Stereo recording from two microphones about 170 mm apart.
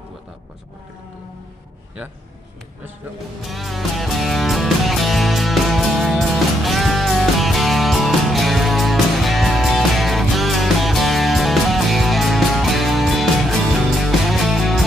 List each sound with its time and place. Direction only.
3.4 s music: centre (ahead or behind)